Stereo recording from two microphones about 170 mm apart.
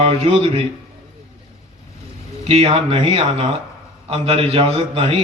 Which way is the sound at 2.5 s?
35° right (ahead or behind).